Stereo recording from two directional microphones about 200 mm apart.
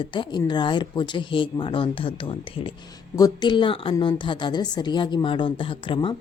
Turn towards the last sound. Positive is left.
turn(degrees=25)  # may be behind; listen again after turning